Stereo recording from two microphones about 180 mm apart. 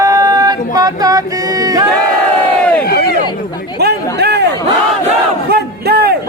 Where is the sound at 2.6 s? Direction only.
5° left (ahead or behind).